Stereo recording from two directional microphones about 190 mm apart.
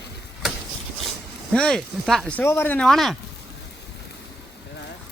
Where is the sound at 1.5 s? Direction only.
5° left (ahead or behind).